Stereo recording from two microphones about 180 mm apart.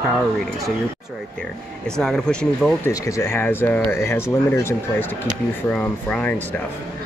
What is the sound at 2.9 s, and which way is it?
Speech, 20° left (ahead or behind).